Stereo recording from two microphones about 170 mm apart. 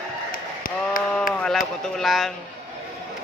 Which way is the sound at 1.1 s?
5° left (ahead or behind).